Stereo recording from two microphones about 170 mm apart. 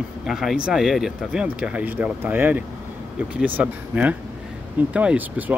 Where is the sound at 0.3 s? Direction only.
Centre (ahead or behind).